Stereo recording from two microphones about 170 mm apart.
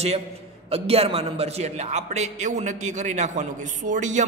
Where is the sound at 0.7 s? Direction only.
35° right (ahead or behind).